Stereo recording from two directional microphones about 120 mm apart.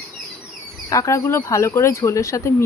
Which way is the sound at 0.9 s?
25° left (ahead or behind).